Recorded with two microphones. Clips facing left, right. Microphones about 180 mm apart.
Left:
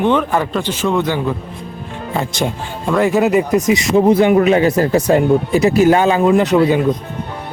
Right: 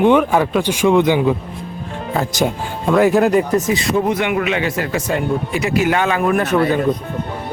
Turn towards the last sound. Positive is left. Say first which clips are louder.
# left 4 dB
turn(degrees=15)  # may be behind; listen again after turning